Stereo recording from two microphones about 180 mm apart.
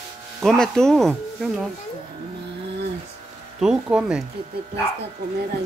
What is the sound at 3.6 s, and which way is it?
Speech, 5° right (ahead or behind).